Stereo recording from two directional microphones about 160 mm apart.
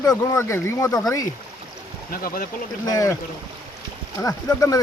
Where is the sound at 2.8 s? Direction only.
20° left (ahead or behind).